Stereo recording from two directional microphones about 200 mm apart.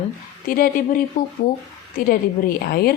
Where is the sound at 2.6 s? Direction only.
50° left (ahead or behind).